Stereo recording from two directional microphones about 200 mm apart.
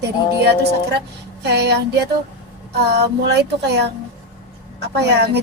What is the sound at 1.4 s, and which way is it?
Speech, 55° right (ahead or behind).